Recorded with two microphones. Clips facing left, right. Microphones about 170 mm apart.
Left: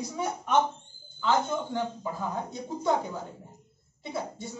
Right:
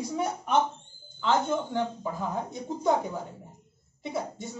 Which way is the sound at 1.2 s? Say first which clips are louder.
Right 1 dB; 20° right (ahead or behind).